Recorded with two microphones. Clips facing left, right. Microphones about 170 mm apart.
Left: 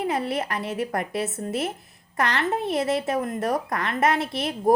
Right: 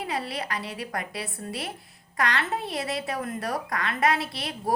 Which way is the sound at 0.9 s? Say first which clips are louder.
Left 7 dB; 45° left (ahead or behind).